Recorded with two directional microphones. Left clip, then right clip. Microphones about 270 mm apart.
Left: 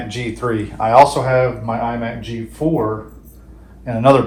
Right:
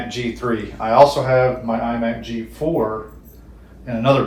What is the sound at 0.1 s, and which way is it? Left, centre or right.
Speech, left.